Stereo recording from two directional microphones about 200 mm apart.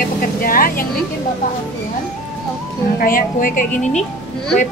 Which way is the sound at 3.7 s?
5° left (ahead or behind).